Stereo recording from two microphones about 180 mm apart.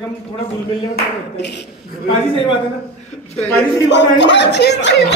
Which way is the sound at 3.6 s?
75° left (ahead or behind).